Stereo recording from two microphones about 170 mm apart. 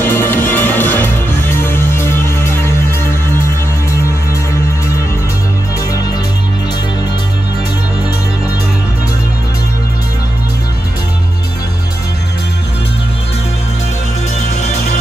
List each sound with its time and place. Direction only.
0.0 s music: 10° left (ahead or behind)
14.6 s music: 45° left (ahead or behind)